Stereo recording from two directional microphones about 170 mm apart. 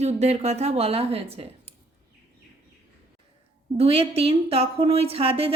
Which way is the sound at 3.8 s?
35° right (ahead or behind).